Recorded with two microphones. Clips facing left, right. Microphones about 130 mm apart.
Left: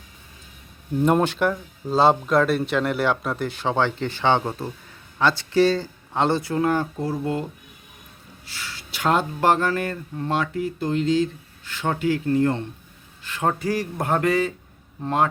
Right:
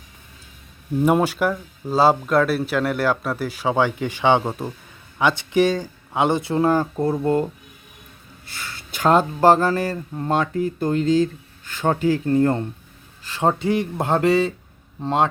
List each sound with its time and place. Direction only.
1.0 s speech: 5° right (ahead or behind)
6.4 s speech: 30° right (ahead or behind)
7.0 s speech: 50° right (ahead or behind)
8.4 s speech: 55° right (ahead or behind)
13.2 s speech: 30° right (ahead or behind)